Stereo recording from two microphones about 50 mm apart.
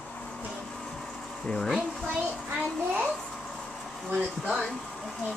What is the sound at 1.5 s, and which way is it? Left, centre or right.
Speech, centre.